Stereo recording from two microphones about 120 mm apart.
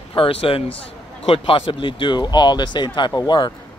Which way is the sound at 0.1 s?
50° left (ahead or behind).